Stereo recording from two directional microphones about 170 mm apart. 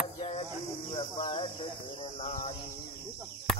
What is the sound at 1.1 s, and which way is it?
Cricket, 30° left (ahead or behind).